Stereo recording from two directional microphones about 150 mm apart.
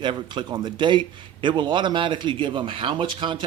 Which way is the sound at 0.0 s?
30° right (ahead or behind).